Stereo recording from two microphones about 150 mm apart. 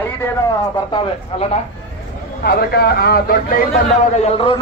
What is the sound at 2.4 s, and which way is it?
A man's voice, 90° left.